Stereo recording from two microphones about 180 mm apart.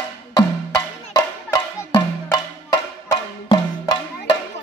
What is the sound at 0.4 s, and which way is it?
Music, 25° left (ahead or behind).